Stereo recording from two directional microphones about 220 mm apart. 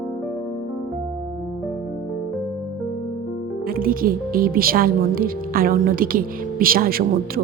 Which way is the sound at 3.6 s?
40° right (ahead or behind).